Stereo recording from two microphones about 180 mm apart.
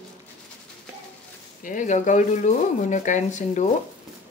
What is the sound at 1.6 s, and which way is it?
Speech, 45° left (ahead or behind).